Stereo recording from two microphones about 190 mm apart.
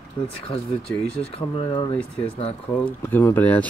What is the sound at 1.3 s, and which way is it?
Speech, 25° left (ahead or behind).